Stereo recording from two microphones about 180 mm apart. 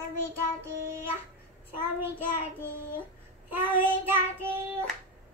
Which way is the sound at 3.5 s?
10° right (ahead or behind).